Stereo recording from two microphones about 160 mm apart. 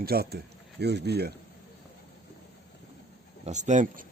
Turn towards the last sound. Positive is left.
turn(degrees=-50)  # may be behind; listen again after turning